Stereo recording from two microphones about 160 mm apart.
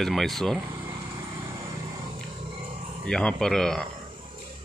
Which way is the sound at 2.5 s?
35° right (ahead or behind).